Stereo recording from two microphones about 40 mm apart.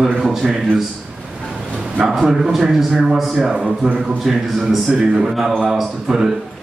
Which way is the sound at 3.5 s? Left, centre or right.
Right.